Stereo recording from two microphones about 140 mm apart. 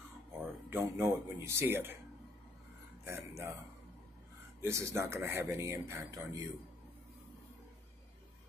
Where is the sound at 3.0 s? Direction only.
20° right (ahead or behind).